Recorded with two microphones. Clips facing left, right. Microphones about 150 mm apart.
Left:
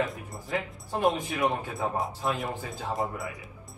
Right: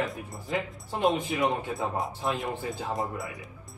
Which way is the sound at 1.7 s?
Centre (ahead or behind).